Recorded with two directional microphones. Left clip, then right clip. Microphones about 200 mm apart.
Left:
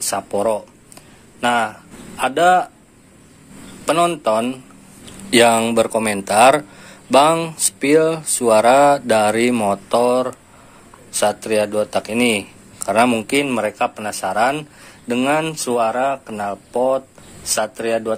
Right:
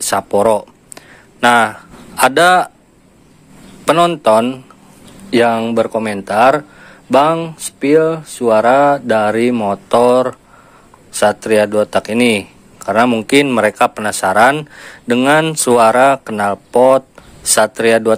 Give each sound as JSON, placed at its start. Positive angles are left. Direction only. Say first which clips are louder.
{"t": 0.0, "sound": "a sound", "louder": "right 7 dB", "side_deg": -35}
{"t": 3.8, "sound": "a man's voice", "louder": "right 5 dB", "side_deg": -30}
{"t": 5.3, "sound": "speech", "louder": "even", "side_deg": -15}
{"t": 9.8, "sound": "a man's voice", "louder": "right 8 dB", "side_deg": -30}